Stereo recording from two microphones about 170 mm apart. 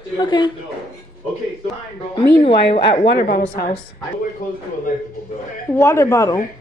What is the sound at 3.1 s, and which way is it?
Speech, 70° left (ahead or behind).